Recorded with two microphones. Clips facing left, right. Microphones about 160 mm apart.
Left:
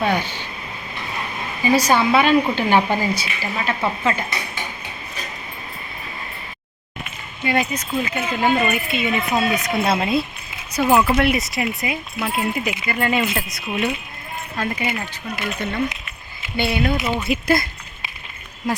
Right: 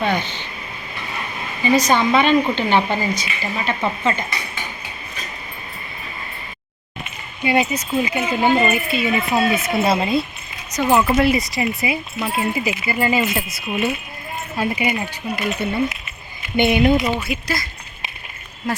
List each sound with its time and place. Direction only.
0.0 s a sound: 10° left (ahead or behind)
1.6 s a woman's voice: 10° left (ahead or behind)
7.4 s a woman's voice: 10° right (ahead or behind)
17.4 s speech: 55° left (ahead or behind)